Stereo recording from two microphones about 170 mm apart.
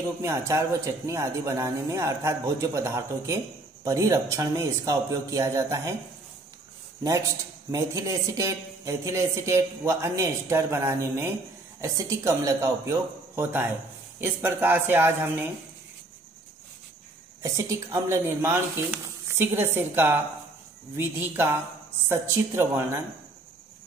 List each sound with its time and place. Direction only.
0.2 s speech: 15° right (ahead or behind)
7.7 s speech: 20° right (ahead or behind)
17.4 s speech: 20° right (ahead or behind)